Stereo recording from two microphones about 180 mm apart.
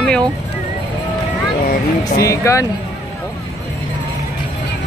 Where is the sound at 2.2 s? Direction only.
15° left (ahead or behind).